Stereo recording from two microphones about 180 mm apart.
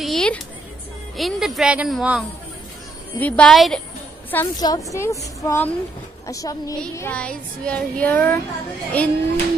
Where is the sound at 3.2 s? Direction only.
10° left (ahead or behind).